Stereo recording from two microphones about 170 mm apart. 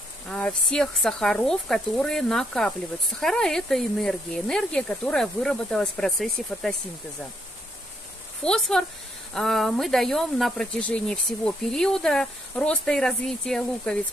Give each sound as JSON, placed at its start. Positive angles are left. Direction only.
{"t": 0.3, "sound": "speech", "side_deg": 5}
{"t": 8.5, "sound": "speech", "side_deg": 5}